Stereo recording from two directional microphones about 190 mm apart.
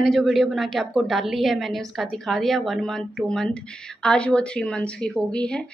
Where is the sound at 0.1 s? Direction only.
Centre (ahead or behind).